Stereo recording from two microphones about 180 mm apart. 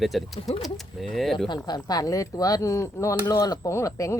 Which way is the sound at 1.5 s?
25° left (ahead or behind).